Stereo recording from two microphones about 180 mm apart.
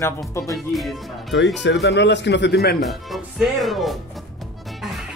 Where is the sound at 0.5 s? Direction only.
Centre (ahead or behind).